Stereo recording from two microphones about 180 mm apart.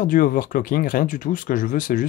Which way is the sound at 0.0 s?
50° left (ahead or behind).